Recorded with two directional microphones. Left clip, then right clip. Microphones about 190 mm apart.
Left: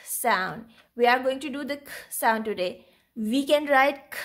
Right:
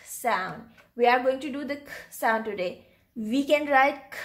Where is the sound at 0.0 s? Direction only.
35° left (ahead or behind).